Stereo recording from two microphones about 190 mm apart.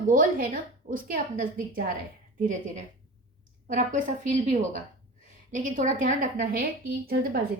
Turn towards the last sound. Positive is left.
turn(degrees=-55)  # may be behind; listen again after turning